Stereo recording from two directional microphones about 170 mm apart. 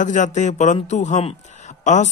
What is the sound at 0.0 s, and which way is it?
Speech, 45° left (ahead or behind).